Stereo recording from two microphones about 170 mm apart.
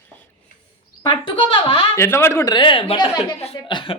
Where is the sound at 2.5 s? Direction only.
30° left (ahead or behind).